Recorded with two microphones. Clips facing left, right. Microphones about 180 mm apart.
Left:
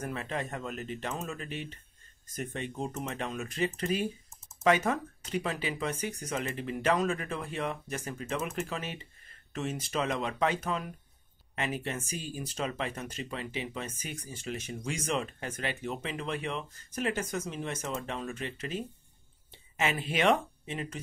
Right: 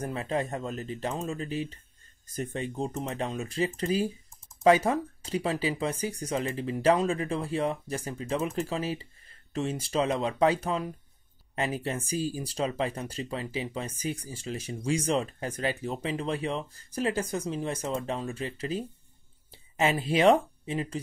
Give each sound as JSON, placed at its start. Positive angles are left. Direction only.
{"t": 0.0, "sound": "speech", "side_deg": -30}